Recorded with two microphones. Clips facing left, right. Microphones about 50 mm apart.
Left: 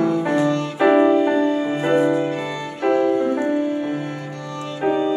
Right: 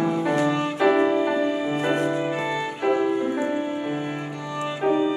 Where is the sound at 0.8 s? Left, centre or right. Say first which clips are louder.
Left 6 dB; centre.